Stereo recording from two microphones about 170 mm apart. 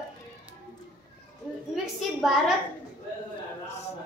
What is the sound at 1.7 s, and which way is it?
Speech, centre (ahead or behind).